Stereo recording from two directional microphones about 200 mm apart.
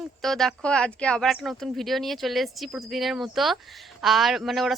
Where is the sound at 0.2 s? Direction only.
Centre (ahead or behind).